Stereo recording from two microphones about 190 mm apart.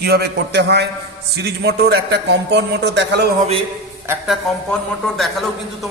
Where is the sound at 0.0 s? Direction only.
60° right (ahead or behind).